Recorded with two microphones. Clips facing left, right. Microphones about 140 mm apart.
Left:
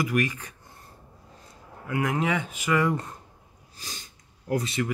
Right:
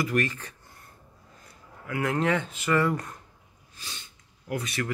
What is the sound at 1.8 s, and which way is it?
Speech, 15° left (ahead or behind).